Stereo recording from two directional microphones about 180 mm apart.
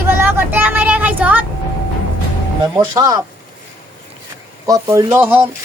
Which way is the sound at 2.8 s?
20° right (ahead or behind).